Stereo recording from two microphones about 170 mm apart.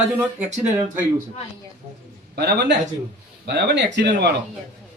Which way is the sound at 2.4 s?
70° right (ahead or behind).